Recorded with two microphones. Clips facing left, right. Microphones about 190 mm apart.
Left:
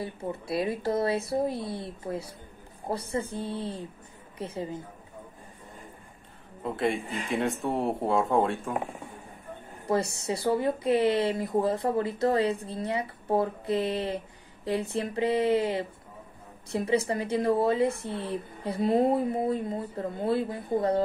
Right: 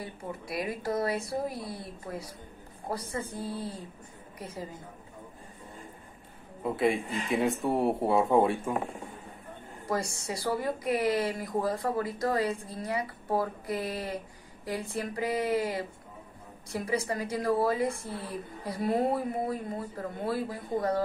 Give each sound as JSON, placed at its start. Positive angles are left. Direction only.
{"t": 0.0, "sound": "speech", "side_deg": 25}
{"t": 6.6, "sound": "speech", "side_deg": 0}
{"t": 9.8, "sound": "speech", "side_deg": 25}